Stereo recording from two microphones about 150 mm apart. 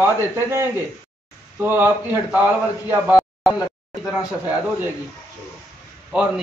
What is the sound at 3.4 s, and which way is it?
A man's voice, centre (ahead or behind).